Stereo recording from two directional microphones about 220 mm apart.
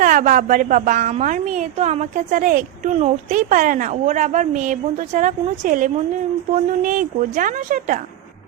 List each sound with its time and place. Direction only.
0.0 s a woman's voice: 35° right (ahead or behind)